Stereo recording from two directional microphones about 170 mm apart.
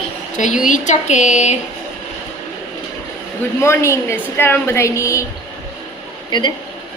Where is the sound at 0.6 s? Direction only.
45° left (ahead or behind).